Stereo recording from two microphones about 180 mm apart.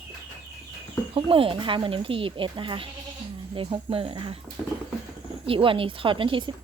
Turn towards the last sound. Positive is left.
turn(degrees=-25)  # may be behind; listen again after turning